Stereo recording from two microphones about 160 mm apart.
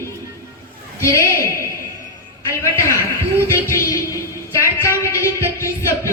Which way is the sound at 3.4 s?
20° left (ahead or behind).